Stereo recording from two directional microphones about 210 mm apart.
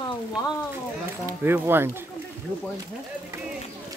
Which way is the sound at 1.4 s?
10° right (ahead or behind).